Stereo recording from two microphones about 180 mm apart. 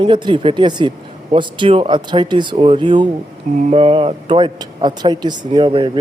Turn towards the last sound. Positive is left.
turn(degrees=-25)  # may be behind; listen again after turning